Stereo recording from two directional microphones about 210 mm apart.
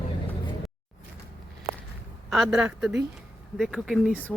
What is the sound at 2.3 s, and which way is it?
Speech, 5° right (ahead or behind).